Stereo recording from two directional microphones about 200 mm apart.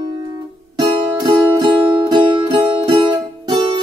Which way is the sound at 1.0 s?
20° right (ahead or behind).